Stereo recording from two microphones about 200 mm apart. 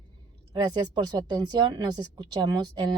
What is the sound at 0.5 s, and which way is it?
Speech, 20° right (ahead or behind).